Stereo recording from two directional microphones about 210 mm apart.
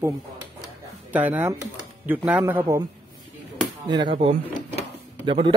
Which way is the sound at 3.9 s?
20° right (ahead or behind).